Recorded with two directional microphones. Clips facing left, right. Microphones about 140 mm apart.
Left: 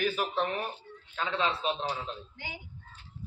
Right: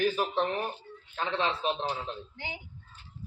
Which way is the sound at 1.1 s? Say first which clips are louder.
Even; 30° right (ahead or behind).